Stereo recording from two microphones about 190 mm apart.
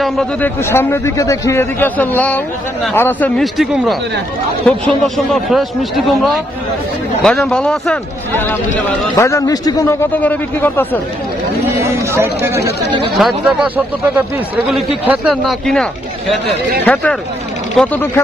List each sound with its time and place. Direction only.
0.0 s a man's voice: 5° left (ahead or behind)
11.8 s speech: 15° right (ahead or behind)
13.1 s a man's voice: centre (ahead or behind)
14.7 s a man's voice: centre (ahead or behind)